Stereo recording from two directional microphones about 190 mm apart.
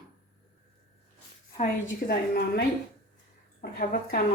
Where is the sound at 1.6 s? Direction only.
55° left (ahead or behind).